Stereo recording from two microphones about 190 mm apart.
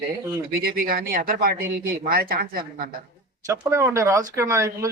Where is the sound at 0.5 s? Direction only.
50° right (ahead or behind).